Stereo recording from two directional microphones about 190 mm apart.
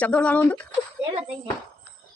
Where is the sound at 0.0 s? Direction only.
5° left (ahead or behind).